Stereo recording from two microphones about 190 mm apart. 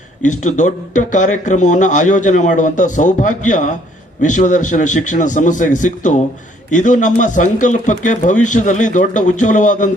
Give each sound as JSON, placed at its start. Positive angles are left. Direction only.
{"t": 0.2, "sound": "a man's voice", "side_deg": 40}